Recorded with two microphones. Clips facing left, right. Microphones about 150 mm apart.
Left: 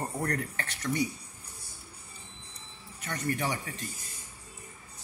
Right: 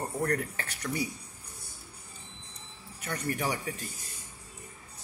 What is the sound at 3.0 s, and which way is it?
Speech, 10° right (ahead or behind).